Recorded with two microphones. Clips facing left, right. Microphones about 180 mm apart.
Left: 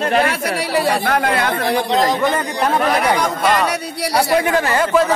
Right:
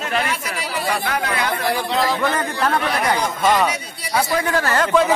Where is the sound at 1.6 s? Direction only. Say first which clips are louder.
Left 4 dB; 20° left (ahead or behind).